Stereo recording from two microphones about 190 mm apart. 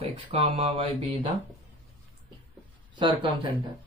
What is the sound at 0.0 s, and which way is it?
Speech, 35° right (ahead or behind).